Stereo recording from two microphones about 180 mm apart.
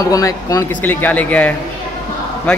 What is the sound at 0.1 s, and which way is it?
A man's voice, 20° left (ahead or behind).